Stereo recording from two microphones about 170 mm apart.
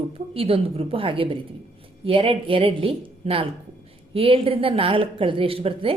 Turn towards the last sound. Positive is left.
turn(degrees=-35)  # may be behind; listen again after turning